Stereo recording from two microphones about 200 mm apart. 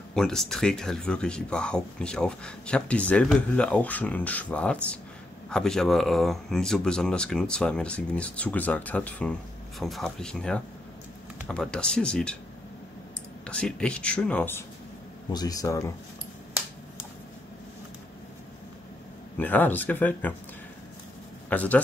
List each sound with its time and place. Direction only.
0.1 s speech: centre (ahead or behind)
13.5 s speech: 5° left (ahead or behind)
19.3 s speech: 10° left (ahead or behind)
21.5 s speech: 5° left (ahead or behind)